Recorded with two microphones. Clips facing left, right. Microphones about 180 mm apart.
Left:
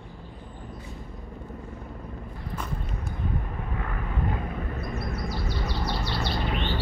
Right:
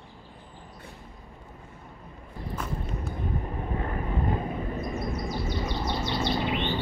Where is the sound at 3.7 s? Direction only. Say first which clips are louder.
Right 4 dB; 30° right (ahead or behind).